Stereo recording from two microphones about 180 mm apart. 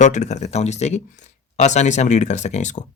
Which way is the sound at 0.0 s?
40° left (ahead or behind).